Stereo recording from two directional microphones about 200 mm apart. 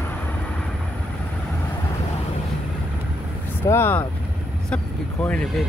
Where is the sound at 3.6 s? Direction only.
10° left (ahead or behind).